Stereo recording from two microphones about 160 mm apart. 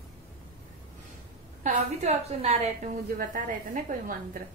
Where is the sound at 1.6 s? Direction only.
40° right (ahead or behind).